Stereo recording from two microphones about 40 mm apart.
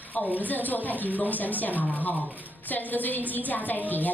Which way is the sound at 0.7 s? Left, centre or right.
Left.